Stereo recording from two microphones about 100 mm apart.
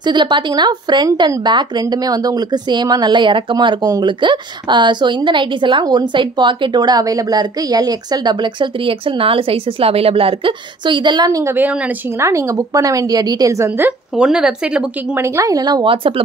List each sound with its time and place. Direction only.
0.0 s a woman's voice: 50° right (ahead or behind)
11.4 s a woman's voice: 20° right (ahead or behind)
13.7 s speech: 15° right (ahead or behind)
15.1 s a woman's voice: 30° right (ahead or behind)